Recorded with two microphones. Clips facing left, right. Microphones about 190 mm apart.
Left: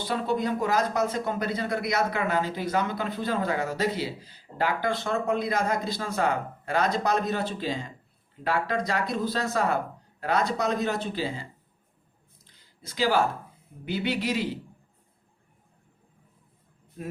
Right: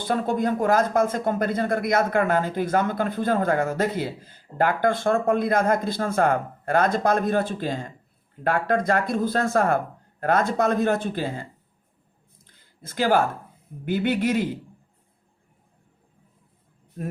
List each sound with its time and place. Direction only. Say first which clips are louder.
0.0 s speech: right 4 dB; 50° right (ahead or behind)
12.5 s a sound: right 2 dB; 50° right (ahead or behind)
13.8 s speech: right 5 dB; 50° right (ahead or behind)